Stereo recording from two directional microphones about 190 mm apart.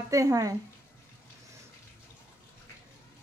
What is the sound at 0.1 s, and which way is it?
Speech, 15° right (ahead or behind).